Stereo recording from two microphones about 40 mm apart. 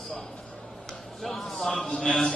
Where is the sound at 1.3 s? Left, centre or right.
Centre.